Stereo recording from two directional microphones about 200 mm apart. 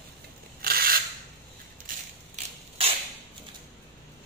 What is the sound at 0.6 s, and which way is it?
Rub, 45° right (ahead or behind).